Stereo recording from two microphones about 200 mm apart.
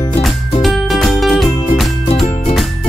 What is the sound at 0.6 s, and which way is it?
Music, centre (ahead or behind).